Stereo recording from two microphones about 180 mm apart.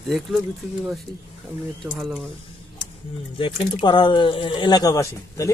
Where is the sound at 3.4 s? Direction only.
30° left (ahead or behind).